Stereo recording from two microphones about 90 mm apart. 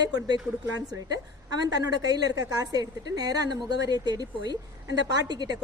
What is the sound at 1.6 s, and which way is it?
A woman's voice, 45° right (ahead or behind).